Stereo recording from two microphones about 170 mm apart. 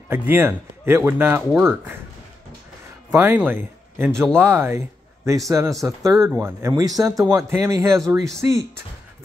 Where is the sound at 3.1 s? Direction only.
10° right (ahead or behind).